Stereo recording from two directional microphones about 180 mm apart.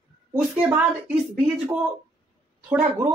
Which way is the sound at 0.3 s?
10° right (ahead or behind).